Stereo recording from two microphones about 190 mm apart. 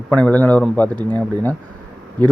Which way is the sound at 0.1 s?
10° left (ahead or behind).